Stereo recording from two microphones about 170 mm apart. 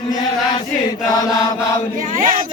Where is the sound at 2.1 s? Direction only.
50° right (ahead or behind).